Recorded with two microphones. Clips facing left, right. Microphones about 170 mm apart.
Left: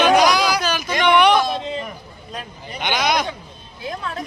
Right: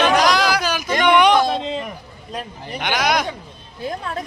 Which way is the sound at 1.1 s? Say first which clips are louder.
Even; 15° right (ahead or behind).